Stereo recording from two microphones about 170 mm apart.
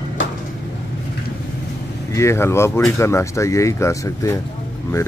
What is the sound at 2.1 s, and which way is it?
Speech, 15° left (ahead or behind).